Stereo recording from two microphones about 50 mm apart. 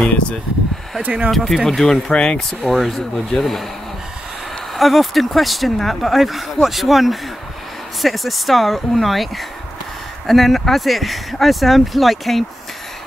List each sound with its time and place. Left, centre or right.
1.3 s speech: centre
2.1 s speech: centre
2.7 s speech: centre
4.7 s speech: centre